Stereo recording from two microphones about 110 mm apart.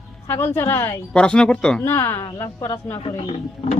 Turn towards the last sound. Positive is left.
turn(degrees=60)  # may be behind; listen again after turning